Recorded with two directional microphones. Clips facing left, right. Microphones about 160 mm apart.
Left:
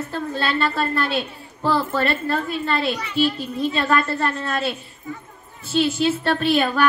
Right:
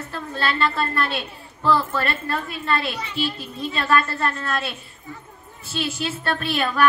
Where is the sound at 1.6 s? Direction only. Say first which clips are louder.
Left 1 dB; 30° left (ahead or behind).